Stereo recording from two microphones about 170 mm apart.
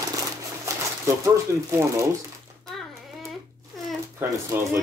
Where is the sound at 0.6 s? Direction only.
15° right (ahead or behind).